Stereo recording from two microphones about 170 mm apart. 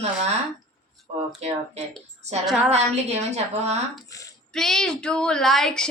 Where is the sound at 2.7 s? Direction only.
40° right (ahead or behind).